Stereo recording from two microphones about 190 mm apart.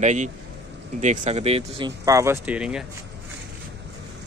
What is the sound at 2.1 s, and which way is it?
Speech, 15° right (ahead or behind).